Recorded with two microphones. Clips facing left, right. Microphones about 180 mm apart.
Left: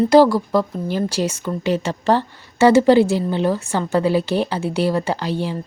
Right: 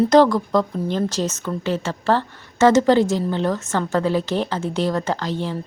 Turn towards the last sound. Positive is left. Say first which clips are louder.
# left 2 dB
turn(degrees=10)  # may be behind; listen again after turning